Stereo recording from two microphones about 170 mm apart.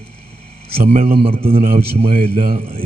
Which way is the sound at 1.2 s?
35° right (ahead or behind).